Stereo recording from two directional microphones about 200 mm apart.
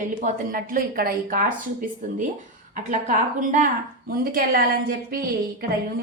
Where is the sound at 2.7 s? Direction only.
40° right (ahead or behind).